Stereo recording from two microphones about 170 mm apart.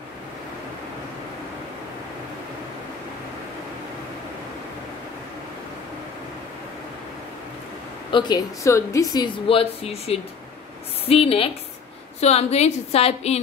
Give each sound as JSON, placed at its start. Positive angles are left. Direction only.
{"t": 8.1, "sound": "a woman's voice", "side_deg": 25}